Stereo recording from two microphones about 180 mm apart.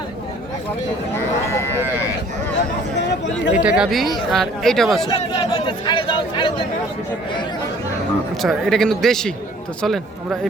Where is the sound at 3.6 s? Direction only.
5° right (ahead or behind).